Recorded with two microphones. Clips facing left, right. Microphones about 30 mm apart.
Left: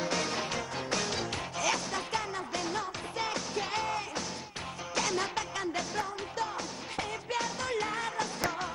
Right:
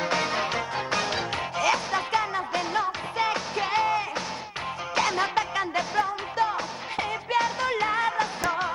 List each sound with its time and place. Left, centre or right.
0.0 s music: right